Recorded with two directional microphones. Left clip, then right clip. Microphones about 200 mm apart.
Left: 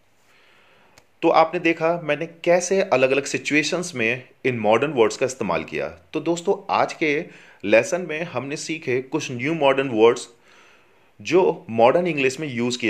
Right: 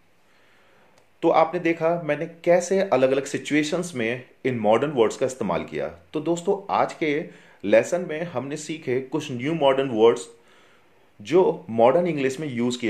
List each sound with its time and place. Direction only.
1.2 s speech: 25° left (ahead or behind)